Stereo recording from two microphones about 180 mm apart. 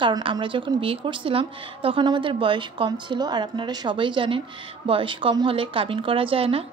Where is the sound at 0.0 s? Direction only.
30° right (ahead or behind).